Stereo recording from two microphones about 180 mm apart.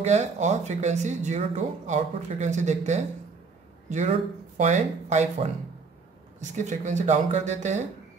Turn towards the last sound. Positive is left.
turn(degrees=-40)  # may be behind; listen again after turning